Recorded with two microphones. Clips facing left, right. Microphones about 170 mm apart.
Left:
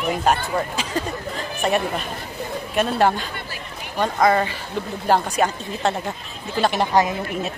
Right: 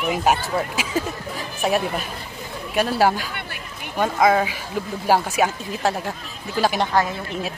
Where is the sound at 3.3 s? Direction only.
60° right (ahead or behind).